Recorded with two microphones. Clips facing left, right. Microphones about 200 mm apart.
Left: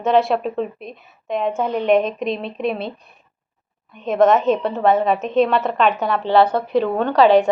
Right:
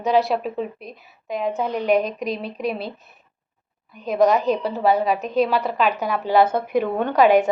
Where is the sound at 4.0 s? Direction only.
Centre (ahead or behind).